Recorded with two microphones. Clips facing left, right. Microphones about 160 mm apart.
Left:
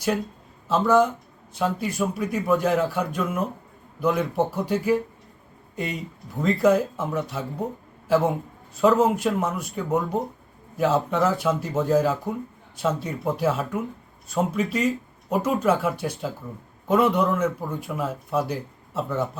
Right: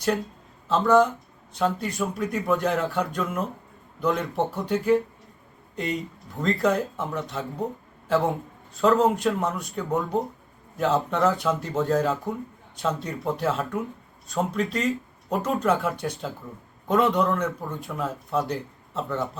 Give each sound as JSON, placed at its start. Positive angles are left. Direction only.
{"t": 0.7, "sound": "speech", "side_deg": 5}